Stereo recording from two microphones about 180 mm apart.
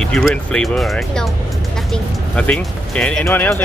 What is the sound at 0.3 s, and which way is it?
Speech, 5° left (ahead or behind).